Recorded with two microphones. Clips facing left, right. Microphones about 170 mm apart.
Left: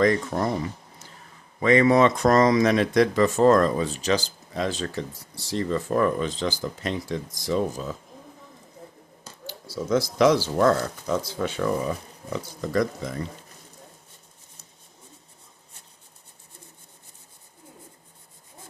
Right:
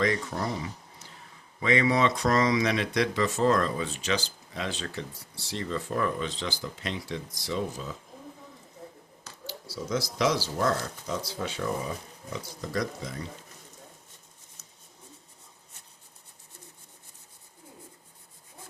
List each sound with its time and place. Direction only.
0.0 s speech: 45° left (ahead or behind)
9.5 s speech: 55° left (ahead or behind)